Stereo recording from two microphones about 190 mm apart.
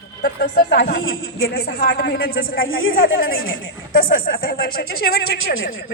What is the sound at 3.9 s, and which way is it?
A woman's voice, 45° left (ahead or behind).